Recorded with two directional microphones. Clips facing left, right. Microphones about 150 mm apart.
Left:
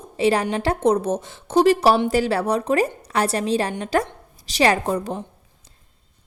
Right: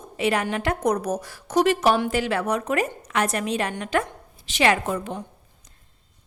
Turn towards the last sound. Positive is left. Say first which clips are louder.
# left 3 dB
turn(degrees=35)  # may be behind; listen again after turning